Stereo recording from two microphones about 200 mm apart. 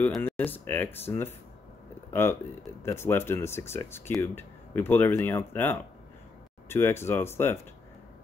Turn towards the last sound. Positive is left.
turn(degrees=10)  # may be behind; listen again after turning